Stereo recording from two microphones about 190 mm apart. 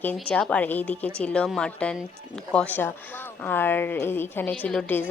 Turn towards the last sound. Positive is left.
turn(degrees=5)  # may be behind; listen again after turning